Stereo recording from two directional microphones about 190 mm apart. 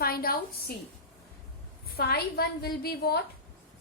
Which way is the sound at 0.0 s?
50° left (ahead or behind).